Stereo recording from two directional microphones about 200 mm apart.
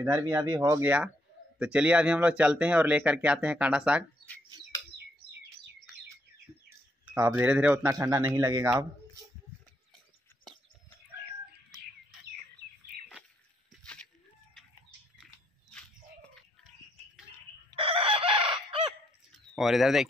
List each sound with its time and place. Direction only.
0.0 s speech: 15° right (ahead or behind)
7.2 s speech: 10° right (ahead or behind)
13.7 s a sound: 5° left (ahead or behind)
17.7 s chicken: 25° right (ahead or behind)
19.5 s speech: centre (ahead or behind)